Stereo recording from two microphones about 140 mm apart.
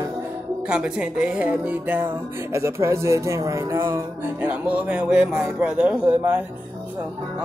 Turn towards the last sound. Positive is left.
turn(degrees=-10)  # may be behind; listen again after turning